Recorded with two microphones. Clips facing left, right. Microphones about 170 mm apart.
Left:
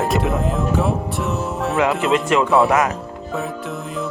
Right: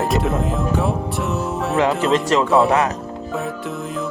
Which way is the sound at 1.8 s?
35° right (ahead or behind).